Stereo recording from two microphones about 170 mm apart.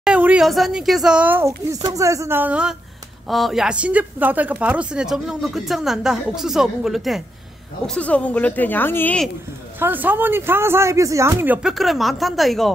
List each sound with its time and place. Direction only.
0.0 s a woman's voice: 5° right (ahead or behind)
9.8 s speech: 10° right (ahead or behind)